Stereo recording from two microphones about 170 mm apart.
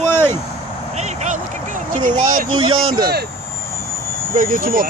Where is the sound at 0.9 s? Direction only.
45° right (ahead or behind).